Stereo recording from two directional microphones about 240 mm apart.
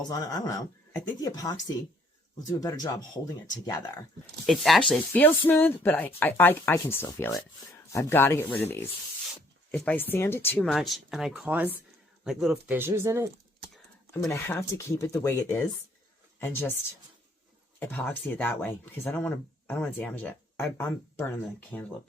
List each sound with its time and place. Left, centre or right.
0.1 s speech: centre
4.4 s speech: centre
14.1 s speech: centre
17.7 s speech: centre